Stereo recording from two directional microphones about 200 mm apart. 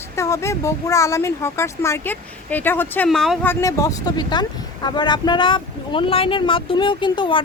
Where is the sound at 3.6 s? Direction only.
15° left (ahead or behind).